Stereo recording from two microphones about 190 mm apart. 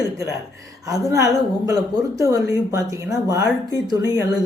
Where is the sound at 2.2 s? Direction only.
15° right (ahead or behind).